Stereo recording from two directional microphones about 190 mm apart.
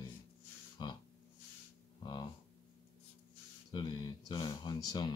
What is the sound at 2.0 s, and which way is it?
Speech, 25° left (ahead or behind).